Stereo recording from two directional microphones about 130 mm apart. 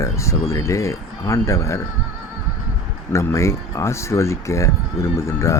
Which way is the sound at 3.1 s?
20° left (ahead or behind).